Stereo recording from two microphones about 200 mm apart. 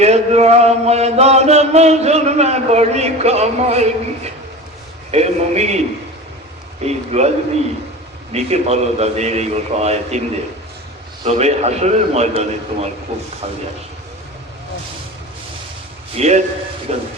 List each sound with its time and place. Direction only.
0.0 s mantra: 30° right (ahead or behind)
6.8 s mantra: 35° right (ahead or behind)
8.3 s mantra: 30° right (ahead or behind)
11.3 s mantra: 35° right (ahead or behind)
13.1 s speech: 30° right (ahead or behind)
16.1 s mantra: 35° right (ahead or behind)